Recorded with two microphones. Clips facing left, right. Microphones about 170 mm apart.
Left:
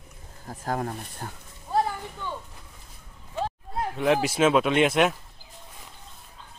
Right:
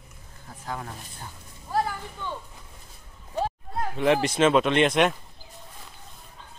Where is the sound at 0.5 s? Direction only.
45° left (ahead or behind).